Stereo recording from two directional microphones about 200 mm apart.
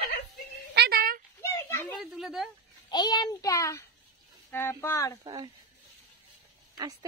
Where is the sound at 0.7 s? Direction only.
50° right (ahead or behind).